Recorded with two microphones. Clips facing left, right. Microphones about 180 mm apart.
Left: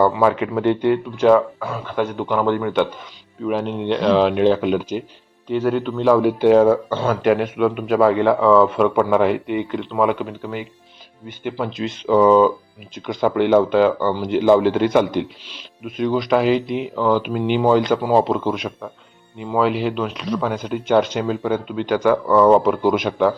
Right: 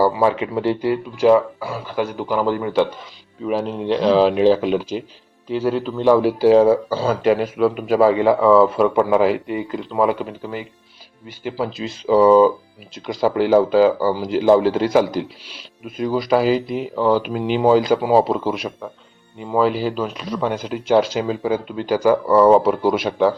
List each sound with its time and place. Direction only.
0.3 s speech: centre (ahead or behind)